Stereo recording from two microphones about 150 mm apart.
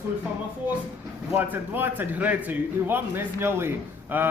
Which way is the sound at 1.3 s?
15° right (ahead or behind).